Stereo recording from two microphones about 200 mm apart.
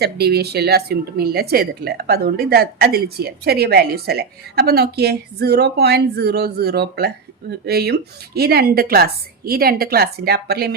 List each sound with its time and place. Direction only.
0.0 s a woman's voice: 55° right (ahead or behind)